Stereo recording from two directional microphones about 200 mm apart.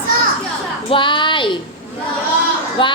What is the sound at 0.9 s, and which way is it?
Speech, 25° left (ahead or behind).